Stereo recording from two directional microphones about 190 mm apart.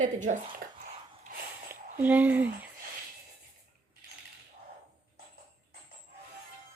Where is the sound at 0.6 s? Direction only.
50° right (ahead or behind).